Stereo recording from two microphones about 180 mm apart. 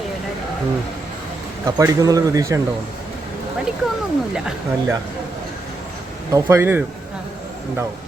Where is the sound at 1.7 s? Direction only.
20° right (ahead or behind).